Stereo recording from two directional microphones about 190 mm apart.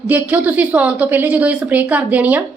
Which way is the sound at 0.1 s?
10° right (ahead or behind).